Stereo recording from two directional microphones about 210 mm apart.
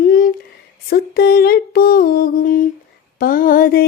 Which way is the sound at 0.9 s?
45° left (ahead or behind).